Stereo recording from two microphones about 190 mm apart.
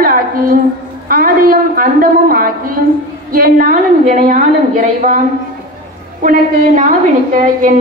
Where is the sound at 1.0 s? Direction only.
50° right (ahead or behind).